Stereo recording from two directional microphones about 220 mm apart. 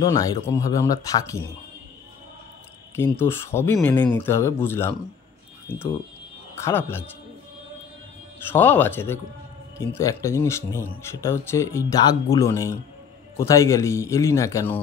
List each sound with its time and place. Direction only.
0.0 s speech: 15° left (ahead or behind)
3.0 s speech: 10° left (ahead or behind)
8.5 s speech: 10° left (ahead or behind)